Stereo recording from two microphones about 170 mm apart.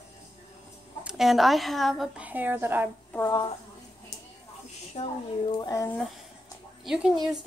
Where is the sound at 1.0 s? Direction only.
Centre (ahead or behind).